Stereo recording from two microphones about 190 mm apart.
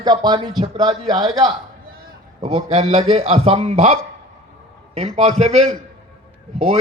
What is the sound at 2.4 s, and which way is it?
A man's voice, 35° right (ahead or behind).